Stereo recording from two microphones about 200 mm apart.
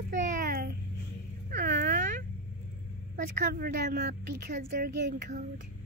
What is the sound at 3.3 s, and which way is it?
A child's voice, 50° right (ahead or behind).